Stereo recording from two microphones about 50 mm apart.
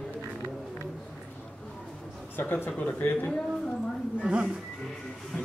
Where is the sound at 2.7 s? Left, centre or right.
Left.